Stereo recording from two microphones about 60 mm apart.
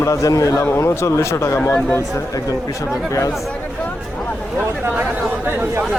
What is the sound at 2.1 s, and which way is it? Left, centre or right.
Speech, left.